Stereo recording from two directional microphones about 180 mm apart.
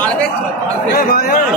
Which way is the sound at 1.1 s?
55° left (ahead or behind).